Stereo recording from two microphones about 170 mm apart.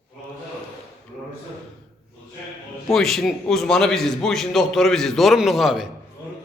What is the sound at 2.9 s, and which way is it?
A man's voice, centre (ahead or behind).